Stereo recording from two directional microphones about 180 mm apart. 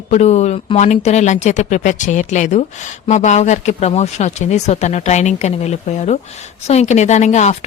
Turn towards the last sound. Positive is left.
turn(degrees=40)  # may be behind; listen again after turning